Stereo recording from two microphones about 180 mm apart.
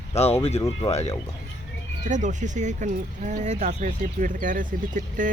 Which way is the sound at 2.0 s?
45° right (ahead or behind).